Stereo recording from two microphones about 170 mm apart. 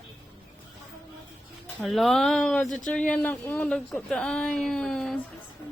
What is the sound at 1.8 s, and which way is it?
Speech, centre (ahead or behind).